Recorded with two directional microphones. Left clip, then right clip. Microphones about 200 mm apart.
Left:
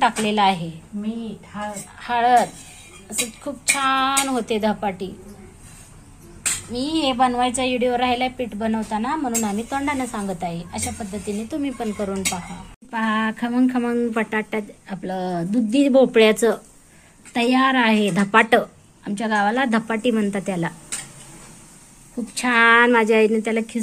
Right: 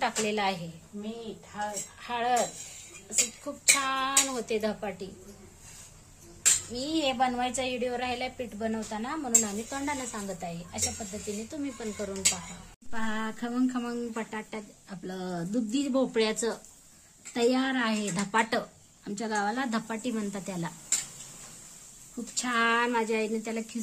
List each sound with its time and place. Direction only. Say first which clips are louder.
0.0 s a woman's voice: left 11 dB; 5° left (ahead or behind)
2.0 s speech: left 12 dB; 5° left (ahead or behind)
6.7 s speech: left 7 dB; 10° left (ahead or behind)
22.4 s speech: left 12 dB; 20° left (ahead or behind)